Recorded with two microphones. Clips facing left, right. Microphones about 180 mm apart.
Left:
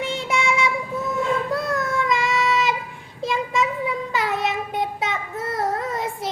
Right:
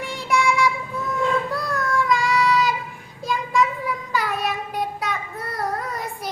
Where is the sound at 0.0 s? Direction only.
25° left (ahead or behind).